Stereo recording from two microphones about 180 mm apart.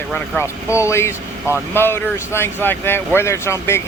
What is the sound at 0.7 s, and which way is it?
Speech, 15° left (ahead or behind).